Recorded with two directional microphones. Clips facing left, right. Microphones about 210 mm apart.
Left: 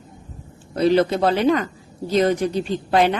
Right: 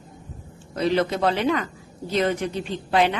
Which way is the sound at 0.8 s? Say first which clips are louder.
Left 5 dB; 35° left (ahead or behind).